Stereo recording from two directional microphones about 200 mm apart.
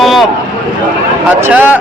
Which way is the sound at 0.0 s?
Centre (ahead or behind).